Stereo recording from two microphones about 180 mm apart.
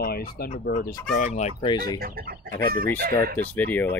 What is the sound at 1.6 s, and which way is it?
Speech, 25° left (ahead or behind).